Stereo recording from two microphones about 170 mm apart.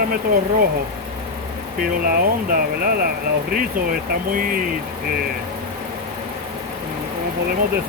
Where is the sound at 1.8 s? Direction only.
60° right (ahead or behind).